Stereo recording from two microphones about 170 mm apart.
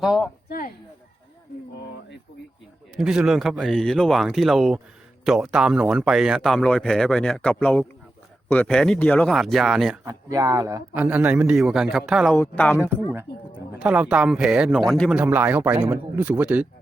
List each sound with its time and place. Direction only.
0.0 s a man's voice: 5° right (ahead or behind)
0.4 s speech: 60° left (ahead or behind)
2.9 s a man's voice: 5° right (ahead or behind)
10.0 s a man's voice: 20° right (ahead or behind); by 12.4 s centre (ahead or behind)
12.4 s speech: 10° left (ahead or behind)
12.8 s a man's voice: 15° right (ahead or behind); by 15.1 s 5° left (ahead or behind)
15.1 s a man's voice: 10° right (ahead or behind)